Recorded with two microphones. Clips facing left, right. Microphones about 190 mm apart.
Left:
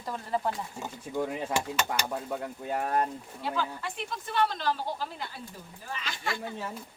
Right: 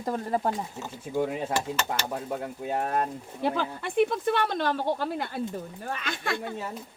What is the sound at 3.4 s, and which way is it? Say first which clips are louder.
Speech: right 4 dB; 60° right (ahead or behind).